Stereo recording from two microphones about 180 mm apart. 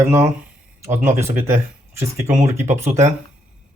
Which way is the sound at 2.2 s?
40° right (ahead or behind).